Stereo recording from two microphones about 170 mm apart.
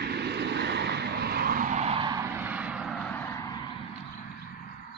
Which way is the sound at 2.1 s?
15° right (ahead or behind).